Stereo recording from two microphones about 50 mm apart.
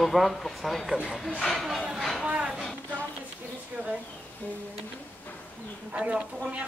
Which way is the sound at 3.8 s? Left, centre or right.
Right.